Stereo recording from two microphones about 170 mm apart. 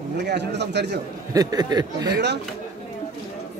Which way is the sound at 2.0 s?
90° right.